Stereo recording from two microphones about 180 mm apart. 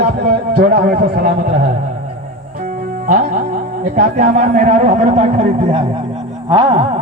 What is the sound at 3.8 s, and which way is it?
Speech, 50° right (ahead or behind).